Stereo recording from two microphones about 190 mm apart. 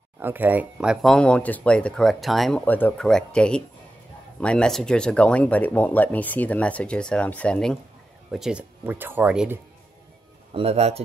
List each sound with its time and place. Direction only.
0.2 s speech: 10° right (ahead or behind)
10.5 s a man's voice: 30° right (ahead or behind)